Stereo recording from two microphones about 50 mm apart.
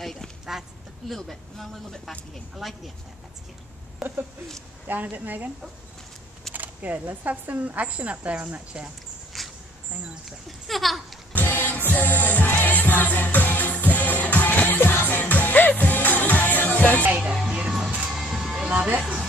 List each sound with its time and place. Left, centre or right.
0.0 s speech: centre
0.5 s duck: centre
1.1 s speech: centre
4.0 s speech: centre
4.8 s speech: right
6.5 s speech: right
9.3 s a sound: centre
10.7 s speech: centre
11.3 s music: left
17.0 s music: right
17.7 s music: centre
18.9 s a sound: right